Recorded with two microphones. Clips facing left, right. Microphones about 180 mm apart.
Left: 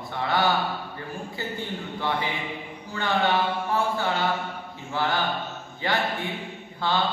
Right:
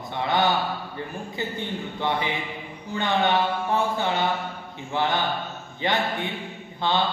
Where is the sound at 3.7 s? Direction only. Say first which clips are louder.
Right 1 dB; 20° right (ahead or behind).